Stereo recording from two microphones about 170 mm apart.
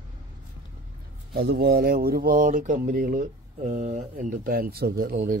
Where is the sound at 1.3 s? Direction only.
65° right (ahead or behind).